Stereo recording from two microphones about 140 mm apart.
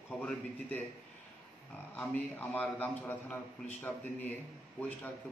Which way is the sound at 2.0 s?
15° left (ahead or behind).